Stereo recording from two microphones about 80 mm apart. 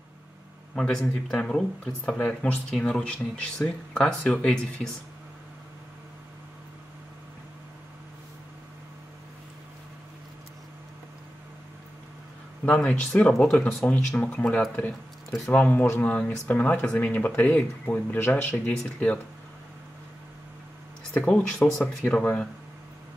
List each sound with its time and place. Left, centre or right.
0.7 s speech: centre
2.0 s speech: centre
12.6 s speech: centre
15.3 s speech: centre
16.0 s speech: centre
21.1 s speech: centre
22.0 s speech: centre